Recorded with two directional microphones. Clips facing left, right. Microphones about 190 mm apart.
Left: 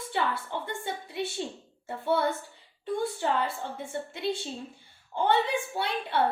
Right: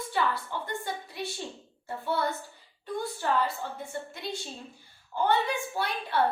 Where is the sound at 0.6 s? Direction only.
25° left (ahead or behind).